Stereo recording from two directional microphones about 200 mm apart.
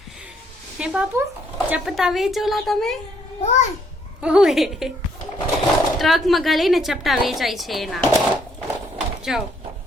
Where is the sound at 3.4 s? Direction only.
35° left (ahead or behind).